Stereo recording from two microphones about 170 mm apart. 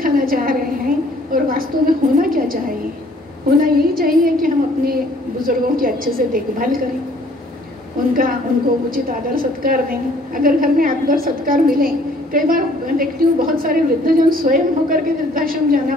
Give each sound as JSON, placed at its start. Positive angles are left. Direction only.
{"t": 0.0, "sound": "a sound", "side_deg": -60}
{"t": 3.5, "sound": "a woman's voice", "side_deg": -60}
{"t": 8.1, "sound": "a woman's voice", "side_deg": -55}